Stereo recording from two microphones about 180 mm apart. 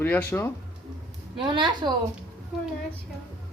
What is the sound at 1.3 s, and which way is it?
Speech, 25° right (ahead or behind).